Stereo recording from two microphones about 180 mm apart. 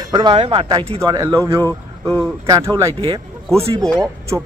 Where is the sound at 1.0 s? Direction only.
20° right (ahead or behind).